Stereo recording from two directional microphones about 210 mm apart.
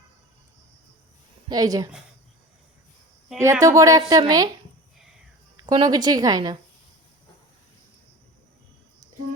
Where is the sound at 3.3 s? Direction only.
15° right (ahead or behind).